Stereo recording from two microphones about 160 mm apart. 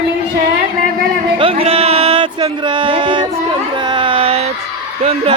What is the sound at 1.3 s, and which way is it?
Music, 35° right (ahead or behind).